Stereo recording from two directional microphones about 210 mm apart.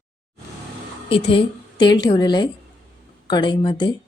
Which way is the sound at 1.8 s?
20° left (ahead or behind).